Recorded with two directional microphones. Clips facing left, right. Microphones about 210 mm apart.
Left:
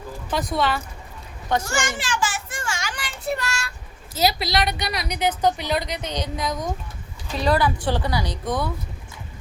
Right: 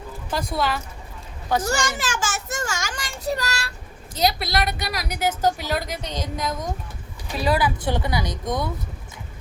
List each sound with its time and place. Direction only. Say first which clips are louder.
0.5 s a woman's voice: left 2 dB; centre (ahead or behind)
1.7 s child singing: right 1 dB; 40° right (ahead or behind)
4.2 s a woman's voice: left 1 dB; centre (ahead or behind)
7.9 s a woman's voice: even; 20° right (ahead or behind)